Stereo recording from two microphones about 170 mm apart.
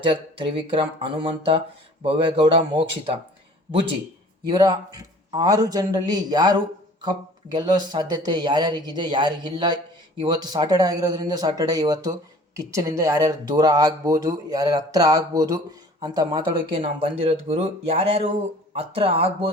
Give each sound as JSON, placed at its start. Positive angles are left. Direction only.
{"t": 0.0, "sound": "speech", "side_deg": -30}